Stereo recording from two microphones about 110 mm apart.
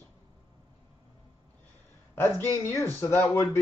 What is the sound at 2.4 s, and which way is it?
A woman's voice, 25° left (ahead or behind).